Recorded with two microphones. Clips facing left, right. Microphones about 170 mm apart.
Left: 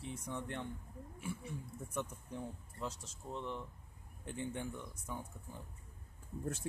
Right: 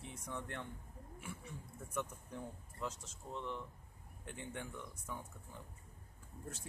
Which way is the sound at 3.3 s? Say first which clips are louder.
Left 1 dB; centre (ahead or behind).